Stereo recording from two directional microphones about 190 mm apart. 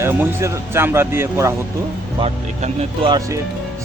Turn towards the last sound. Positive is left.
turn(degrees=-35)  # may be behind; listen again after turning